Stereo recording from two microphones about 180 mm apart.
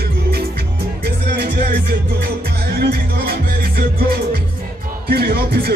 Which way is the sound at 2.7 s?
60° right (ahead or behind).